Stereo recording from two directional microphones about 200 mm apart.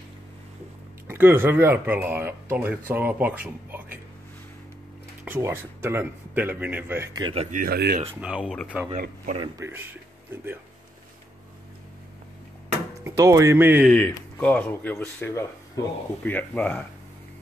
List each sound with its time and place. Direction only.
1.0 s speech: 10° right (ahead or behind)
5.2 s a man's voice: 10° right (ahead or behind)
7.5 s speech: 50° right (ahead or behind)
8.2 s speech: 5° right (ahead or behind)
8.9 s speech: 40° right (ahead or behind)
9.4 s speech: 15° right (ahead or behind)
13.0 s speech: 15° right (ahead or behind)
13.8 s speech: 5° left (ahead or behind)